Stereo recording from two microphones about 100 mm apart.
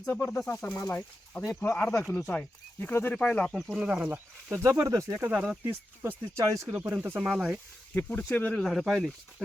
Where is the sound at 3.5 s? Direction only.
Centre (ahead or behind).